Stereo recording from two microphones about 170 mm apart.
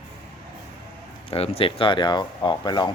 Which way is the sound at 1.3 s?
35° left (ahead or behind).